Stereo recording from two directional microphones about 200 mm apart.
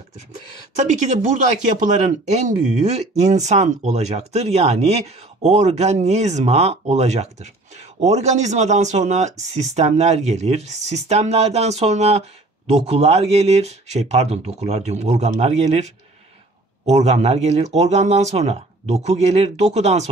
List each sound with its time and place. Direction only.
0.7 s speech: 35° right (ahead or behind)